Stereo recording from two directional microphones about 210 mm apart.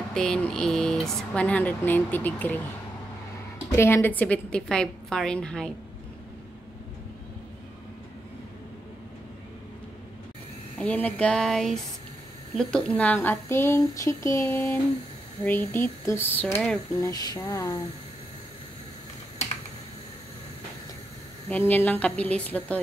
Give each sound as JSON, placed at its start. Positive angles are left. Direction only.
{"t": 0.1, "sound": "speech", "side_deg": 5}
{"t": 3.7, "sound": "a woman's voice", "side_deg": 10}
{"t": 10.8, "sound": "a woman's voice", "side_deg": 5}
{"t": 21.5, "sound": "speech", "side_deg": 10}